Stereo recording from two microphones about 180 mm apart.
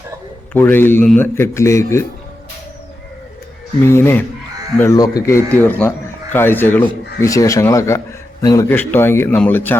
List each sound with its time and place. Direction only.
0.5 s a man's voice: 10° left (ahead or behind)
3.8 s a man's voice: 15° left (ahead or behind)